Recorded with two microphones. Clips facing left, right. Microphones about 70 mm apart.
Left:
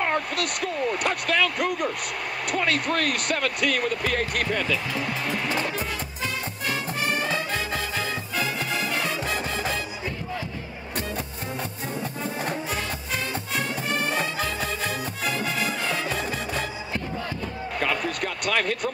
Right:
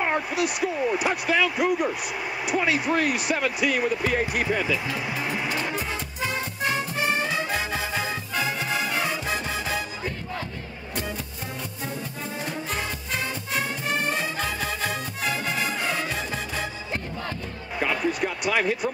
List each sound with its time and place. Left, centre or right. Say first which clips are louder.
0.0 s speech: right 1 dB; centre
6.6 s music: right 2 dB; right
14.4 s music: even; centre
17.7 s a sound: right 2 dB; centre